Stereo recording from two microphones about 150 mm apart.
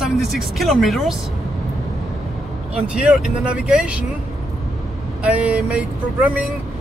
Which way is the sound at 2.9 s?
5° right (ahead or behind).